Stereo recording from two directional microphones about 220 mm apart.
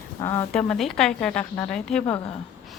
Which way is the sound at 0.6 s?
Centre (ahead or behind).